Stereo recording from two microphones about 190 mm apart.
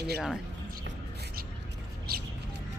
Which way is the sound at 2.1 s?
55° right (ahead or behind).